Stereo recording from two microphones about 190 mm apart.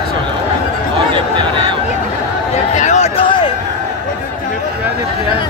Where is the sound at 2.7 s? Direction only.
40° left (ahead or behind).